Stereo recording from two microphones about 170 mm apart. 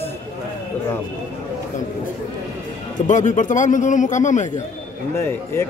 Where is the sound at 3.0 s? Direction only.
50° left (ahead or behind).